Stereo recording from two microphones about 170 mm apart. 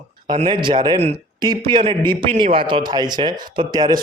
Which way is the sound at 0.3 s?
30° right (ahead or behind).